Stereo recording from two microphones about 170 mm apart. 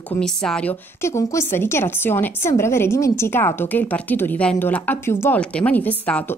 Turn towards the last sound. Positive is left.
turn(degrees=10)  # may be behind; listen again after turning